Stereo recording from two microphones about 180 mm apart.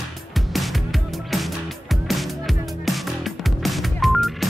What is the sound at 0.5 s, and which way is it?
Music, centre (ahead or behind).